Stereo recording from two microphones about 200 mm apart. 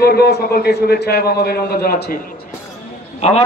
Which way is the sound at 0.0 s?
50° left (ahead or behind).